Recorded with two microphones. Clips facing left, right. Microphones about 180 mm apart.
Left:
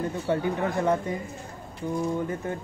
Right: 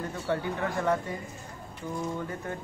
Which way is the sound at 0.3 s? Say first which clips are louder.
Left 3 dB; 20° left (ahead or behind).